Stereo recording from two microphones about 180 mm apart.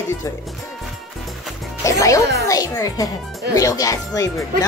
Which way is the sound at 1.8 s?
15° left (ahead or behind).